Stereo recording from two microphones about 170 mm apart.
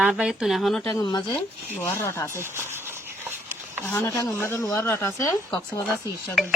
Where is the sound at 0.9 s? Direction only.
25° left (ahead or behind).